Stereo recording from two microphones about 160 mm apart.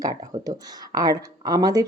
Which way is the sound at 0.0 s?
25° right (ahead or behind).